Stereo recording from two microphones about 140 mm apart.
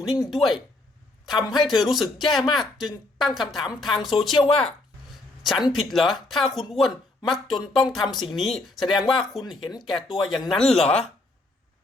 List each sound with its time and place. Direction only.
0.1 s a woman's voice: centre (ahead or behind)
4.4 s speech: 45° left (ahead or behind)
5.4 s a woman's voice: centre (ahead or behind)